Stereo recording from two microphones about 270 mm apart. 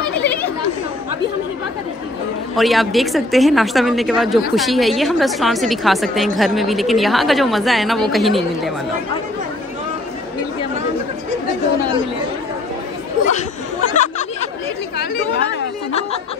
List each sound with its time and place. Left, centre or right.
0.0 s chatter: centre
2.5 s a woman's voice: centre
13.9 s chatter: left